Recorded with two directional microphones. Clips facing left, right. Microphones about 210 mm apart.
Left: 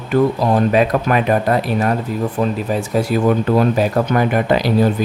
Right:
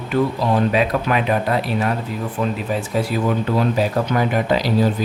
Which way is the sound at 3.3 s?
50° left (ahead or behind).